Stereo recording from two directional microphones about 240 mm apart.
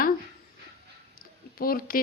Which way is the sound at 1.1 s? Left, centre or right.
Left.